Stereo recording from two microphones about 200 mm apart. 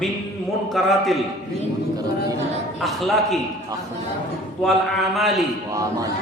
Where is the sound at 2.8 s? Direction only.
Centre (ahead or behind).